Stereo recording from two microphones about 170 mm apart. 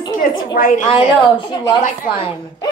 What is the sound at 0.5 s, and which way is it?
Speech, 55° left (ahead or behind).